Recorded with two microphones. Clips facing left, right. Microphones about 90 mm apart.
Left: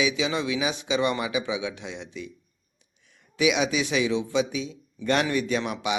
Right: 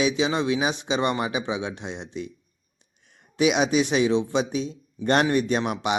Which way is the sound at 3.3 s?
45° right (ahead or behind).